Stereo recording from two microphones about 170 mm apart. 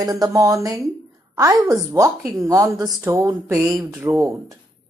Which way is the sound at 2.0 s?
20° right (ahead or behind).